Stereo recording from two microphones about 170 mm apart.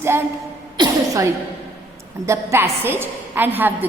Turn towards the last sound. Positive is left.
turn(degrees=-10)  # may be behind; listen again after turning